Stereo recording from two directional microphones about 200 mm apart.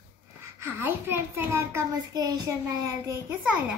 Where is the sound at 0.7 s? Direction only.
10° right (ahead or behind).